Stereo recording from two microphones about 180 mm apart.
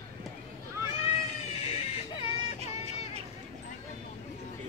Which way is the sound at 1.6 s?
30° left (ahead or behind).